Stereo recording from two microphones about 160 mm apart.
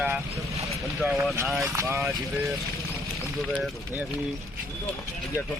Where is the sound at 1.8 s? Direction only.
15° right (ahead or behind).